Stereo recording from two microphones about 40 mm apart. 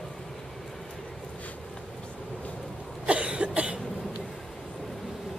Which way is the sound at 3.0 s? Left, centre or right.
Right.